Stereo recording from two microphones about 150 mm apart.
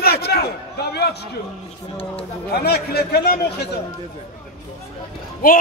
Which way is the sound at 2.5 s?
90° left.